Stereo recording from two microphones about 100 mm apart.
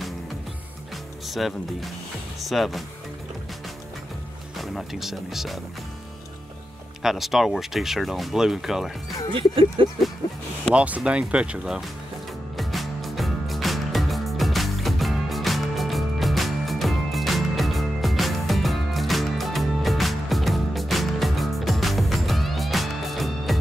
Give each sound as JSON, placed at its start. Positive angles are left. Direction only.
{"t": 1.2, "sound": "speech", "side_deg": 0}
{"t": 4.6, "sound": "speech", "side_deg": 0}
{"t": 7.0, "sound": "speech", "side_deg": -5}
{"t": 9.3, "sound": "a sound", "side_deg": -60}
{"t": 10.2, "sound": "speech", "side_deg": 45}
{"t": 10.7, "sound": "speech", "side_deg": -15}
{"t": 12.5, "sound": "music", "side_deg": 0}